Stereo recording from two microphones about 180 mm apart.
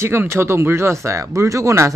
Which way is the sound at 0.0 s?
15° right (ahead or behind).